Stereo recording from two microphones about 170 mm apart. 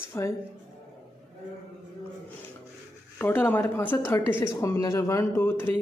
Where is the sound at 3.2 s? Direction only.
10° left (ahead or behind).